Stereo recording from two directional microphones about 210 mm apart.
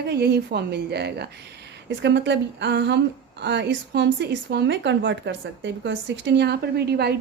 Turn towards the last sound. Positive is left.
turn(degrees=-50)  # may be behind; listen again after turning